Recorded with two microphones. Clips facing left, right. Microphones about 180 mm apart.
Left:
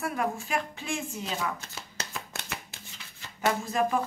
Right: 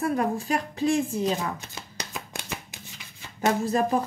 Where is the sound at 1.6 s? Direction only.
15° right (ahead or behind).